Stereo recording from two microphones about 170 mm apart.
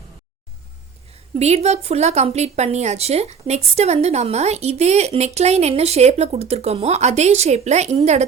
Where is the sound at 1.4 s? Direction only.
40° right (ahead or behind).